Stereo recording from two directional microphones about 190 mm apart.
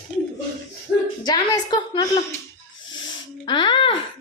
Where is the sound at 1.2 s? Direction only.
20° left (ahead or behind).